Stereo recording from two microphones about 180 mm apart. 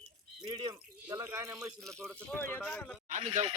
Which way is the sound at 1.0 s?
15° right (ahead or behind).